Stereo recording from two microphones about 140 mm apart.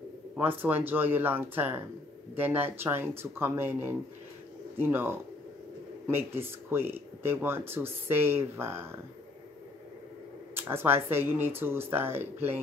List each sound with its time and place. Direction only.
0.4 s speech: 15° right (ahead or behind)
10.5 s speech: 15° right (ahead or behind)